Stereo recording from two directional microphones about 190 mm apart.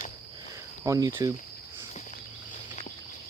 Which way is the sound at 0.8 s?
20° right (ahead or behind).